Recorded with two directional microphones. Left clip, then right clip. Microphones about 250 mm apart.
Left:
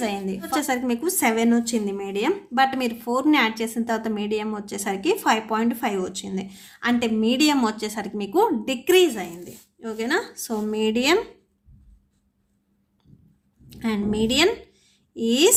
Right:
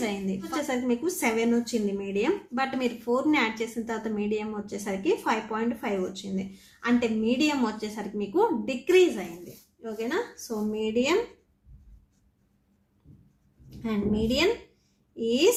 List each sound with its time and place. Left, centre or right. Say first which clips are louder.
0.0 s a woman's voice: left 4 dB; left
13.7 s a woman's voice: left 3 dB; left